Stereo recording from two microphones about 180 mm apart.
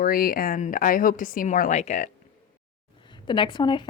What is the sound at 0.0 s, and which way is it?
A woman's voice, 55° left (ahead or behind).